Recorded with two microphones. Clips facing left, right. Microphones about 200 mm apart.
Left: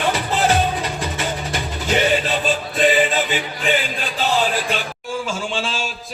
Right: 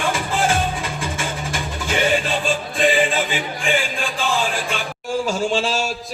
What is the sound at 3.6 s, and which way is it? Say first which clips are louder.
Music: even; 40° left (ahead or behind).